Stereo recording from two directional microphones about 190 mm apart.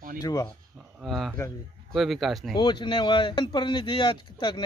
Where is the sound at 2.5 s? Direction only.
25° left (ahead or behind).